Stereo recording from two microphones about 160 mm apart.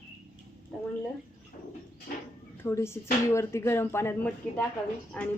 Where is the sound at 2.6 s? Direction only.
15° left (ahead or behind).